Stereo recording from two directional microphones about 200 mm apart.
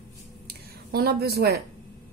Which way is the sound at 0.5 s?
50° right (ahead or behind).